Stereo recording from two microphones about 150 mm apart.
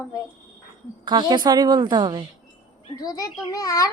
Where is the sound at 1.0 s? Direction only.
30° right (ahead or behind).